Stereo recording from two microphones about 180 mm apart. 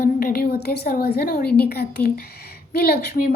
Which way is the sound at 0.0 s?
55° left (ahead or behind).